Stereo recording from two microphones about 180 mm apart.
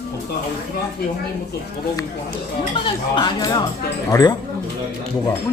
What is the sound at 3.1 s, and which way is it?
Speech, 25° left (ahead or behind).